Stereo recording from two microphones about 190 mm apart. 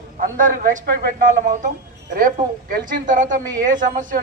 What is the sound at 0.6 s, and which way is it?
Speech, 45° right (ahead or behind).